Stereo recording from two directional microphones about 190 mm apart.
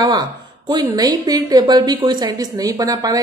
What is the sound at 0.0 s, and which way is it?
Speech, 20° right (ahead or behind).